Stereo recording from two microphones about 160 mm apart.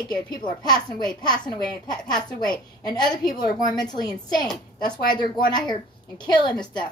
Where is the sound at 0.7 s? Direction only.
25° left (ahead or behind).